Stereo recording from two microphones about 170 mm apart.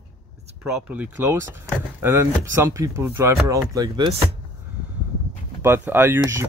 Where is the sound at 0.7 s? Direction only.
10° right (ahead or behind).